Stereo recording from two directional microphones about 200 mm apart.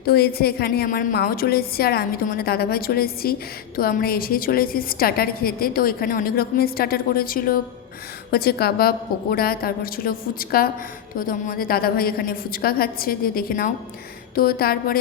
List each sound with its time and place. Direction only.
0.0 s a woman's voice: 50° left (ahead or behind)